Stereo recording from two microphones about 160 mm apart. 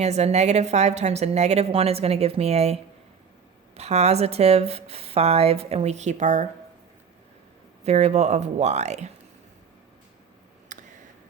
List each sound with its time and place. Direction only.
0.0 s a woman's voice: 45° right (ahead or behind)
3.8 s a woman's voice: 40° right (ahead or behind)
7.9 s a woman's voice: 45° right (ahead or behind)
10.7 s a sound: 55° right (ahead or behind)